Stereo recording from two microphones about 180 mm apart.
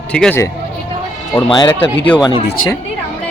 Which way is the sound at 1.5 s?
25° left (ahead or behind).